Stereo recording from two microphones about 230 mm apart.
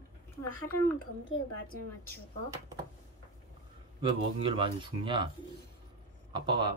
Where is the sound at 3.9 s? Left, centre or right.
Right.